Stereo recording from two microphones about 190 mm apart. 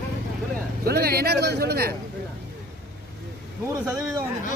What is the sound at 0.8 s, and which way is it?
A man's voice, 55° right (ahead or behind).